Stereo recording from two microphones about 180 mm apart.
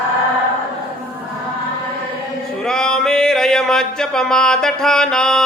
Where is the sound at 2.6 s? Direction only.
5° left (ahead or behind).